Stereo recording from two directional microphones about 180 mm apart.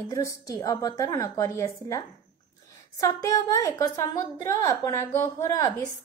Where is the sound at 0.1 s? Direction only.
20° left (ahead or behind).